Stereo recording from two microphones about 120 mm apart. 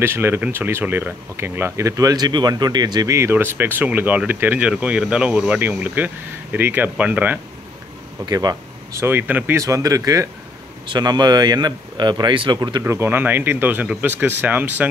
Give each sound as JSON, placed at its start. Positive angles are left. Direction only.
{"t": 0.0, "sound": "speech", "side_deg": -20}
{"t": 3.2, "sound": "speech", "side_deg": -20}
{"t": 8.3, "sound": "speech", "side_deg": -35}
{"t": 9.0, "sound": "speech", "side_deg": -15}
{"t": 12.8, "sound": "speech", "side_deg": -20}